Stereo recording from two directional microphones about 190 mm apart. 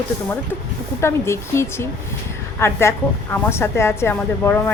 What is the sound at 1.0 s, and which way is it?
A woman's voice, 15° left (ahead or behind).